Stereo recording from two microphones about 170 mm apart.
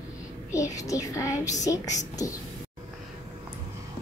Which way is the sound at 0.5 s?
20° left (ahead or behind).